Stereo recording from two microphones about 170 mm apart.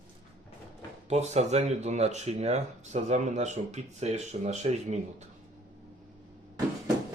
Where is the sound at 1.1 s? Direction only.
40° right (ahead or behind).